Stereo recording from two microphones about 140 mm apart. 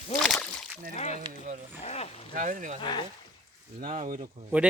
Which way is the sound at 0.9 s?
55° left (ahead or behind).